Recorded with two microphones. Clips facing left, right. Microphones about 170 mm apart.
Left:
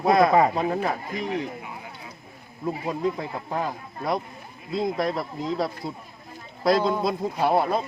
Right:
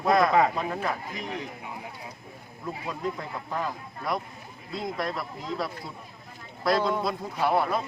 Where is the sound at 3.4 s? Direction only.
30° left (ahead or behind).